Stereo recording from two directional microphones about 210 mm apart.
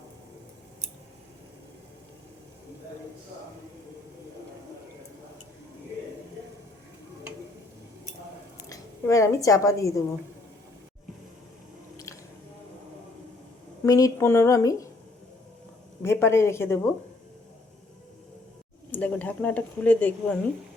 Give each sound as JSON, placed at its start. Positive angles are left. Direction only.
{"t": 8.7, "sound": "a woman's voice", "side_deg": 15}
{"t": 13.8, "sound": "speech", "side_deg": 15}
{"t": 16.0, "sound": "speech", "side_deg": 10}
{"t": 18.9, "sound": "speech", "side_deg": 5}